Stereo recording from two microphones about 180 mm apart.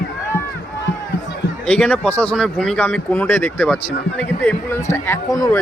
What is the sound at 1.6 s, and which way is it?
Speech, 5° left (ahead or behind).